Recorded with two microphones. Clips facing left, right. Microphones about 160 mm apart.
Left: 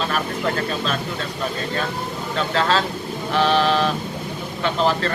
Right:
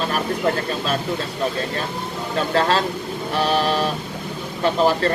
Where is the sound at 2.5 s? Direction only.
40° right (ahead or behind).